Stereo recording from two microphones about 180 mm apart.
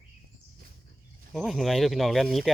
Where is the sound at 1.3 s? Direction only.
Centre (ahead or behind).